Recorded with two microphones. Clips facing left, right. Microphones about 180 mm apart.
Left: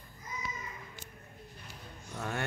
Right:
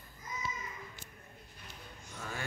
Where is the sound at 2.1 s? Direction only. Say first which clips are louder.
Left 6 dB; 65° left (ahead or behind).